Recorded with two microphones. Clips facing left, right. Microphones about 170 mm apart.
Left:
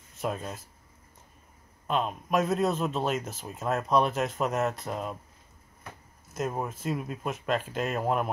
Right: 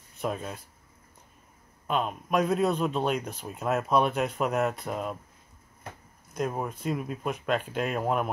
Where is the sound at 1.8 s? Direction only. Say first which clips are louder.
Even; centre (ahead or behind).